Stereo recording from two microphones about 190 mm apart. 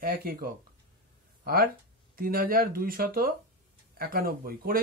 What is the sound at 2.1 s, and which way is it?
Speech, 50° right (ahead or behind).